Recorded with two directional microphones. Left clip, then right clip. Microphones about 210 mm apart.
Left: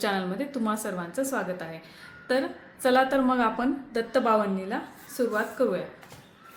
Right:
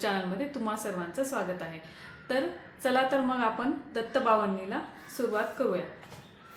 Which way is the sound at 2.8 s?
30° left (ahead or behind).